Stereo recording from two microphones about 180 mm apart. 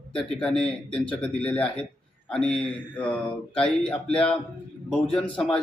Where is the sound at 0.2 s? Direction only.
5° left (ahead or behind).